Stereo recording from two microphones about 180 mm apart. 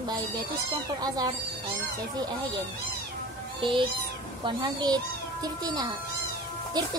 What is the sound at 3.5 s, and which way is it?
A child's voice, 25° right (ahead or behind).